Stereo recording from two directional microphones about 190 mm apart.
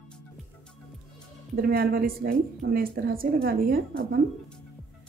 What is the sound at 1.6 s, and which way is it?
A woman's voice, 55° right (ahead or behind).